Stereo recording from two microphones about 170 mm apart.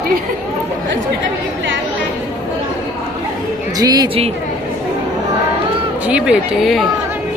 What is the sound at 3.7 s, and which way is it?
Speech, 25° right (ahead or behind).